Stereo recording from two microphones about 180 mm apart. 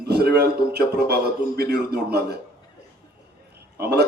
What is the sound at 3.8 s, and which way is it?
Speech, 65° right (ahead or behind).